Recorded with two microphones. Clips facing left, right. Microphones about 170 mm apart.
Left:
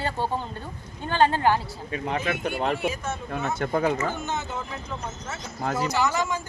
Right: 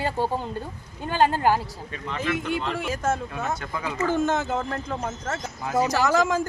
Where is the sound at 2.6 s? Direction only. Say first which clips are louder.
Even; 45° left (ahead or behind).